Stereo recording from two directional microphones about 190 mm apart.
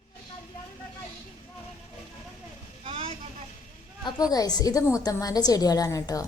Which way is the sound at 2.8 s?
30° right (ahead or behind).